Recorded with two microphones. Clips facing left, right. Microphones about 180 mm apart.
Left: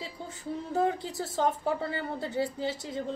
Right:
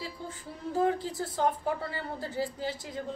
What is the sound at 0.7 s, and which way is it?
A woman's voice, 25° left (ahead or behind).